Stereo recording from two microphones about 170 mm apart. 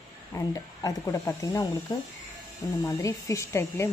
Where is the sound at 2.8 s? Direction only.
20° left (ahead or behind).